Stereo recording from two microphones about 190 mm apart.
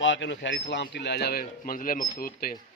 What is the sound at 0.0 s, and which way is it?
A man's voice, 75° left (ahead or behind).